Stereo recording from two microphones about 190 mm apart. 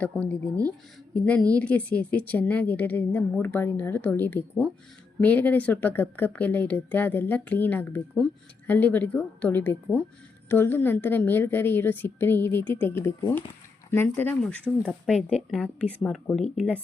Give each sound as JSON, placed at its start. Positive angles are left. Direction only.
{"t": 0.0, "sound": "speech", "side_deg": 5}